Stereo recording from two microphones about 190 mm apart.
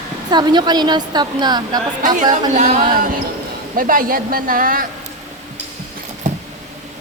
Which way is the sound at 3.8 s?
50° right (ahead or behind).